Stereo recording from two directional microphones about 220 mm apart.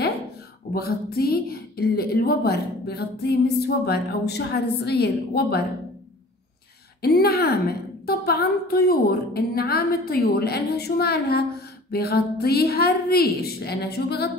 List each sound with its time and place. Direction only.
0.7 s a woman's voice: 45° left (ahead or behind)
7.0 s a woman's voice: 45° left (ahead or behind)